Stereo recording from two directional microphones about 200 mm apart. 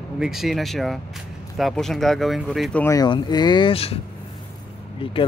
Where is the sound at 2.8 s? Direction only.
15° left (ahead or behind).